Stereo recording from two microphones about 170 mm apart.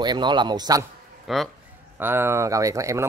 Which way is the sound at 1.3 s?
Centre (ahead or behind).